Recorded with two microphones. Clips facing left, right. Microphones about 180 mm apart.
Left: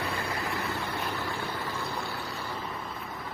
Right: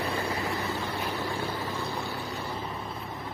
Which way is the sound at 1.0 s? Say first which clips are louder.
Right 2 dB; 10° right (ahead or behind).